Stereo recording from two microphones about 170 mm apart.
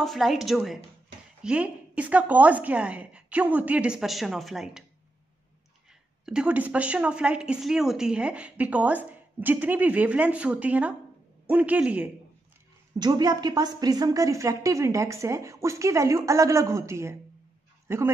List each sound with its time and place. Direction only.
0.0 s a woman's voice: centre (ahead or behind)
6.2 s a woman's voice: 5° right (ahead or behind)
13.0 s a woman's voice: 25° right (ahead or behind)